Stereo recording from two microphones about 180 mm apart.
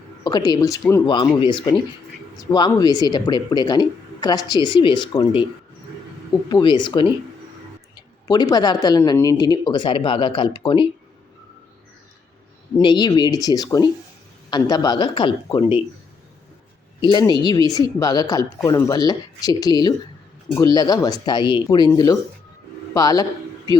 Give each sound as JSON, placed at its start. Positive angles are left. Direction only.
{"t": 0.3, "sound": "speech", "side_deg": 20}
{"t": 2.4, "sound": "speech", "side_deg": 20}
{"t": 6.5, "sound": "speech", "side_deg": 25}
{"t": 8.3, "sound": "speech", "side_deg": 20}
{"t": 12.7, "sound": "speech", "side_deg": 25}
{"t": 17.0, "sound": "speech", "side_deg": 25}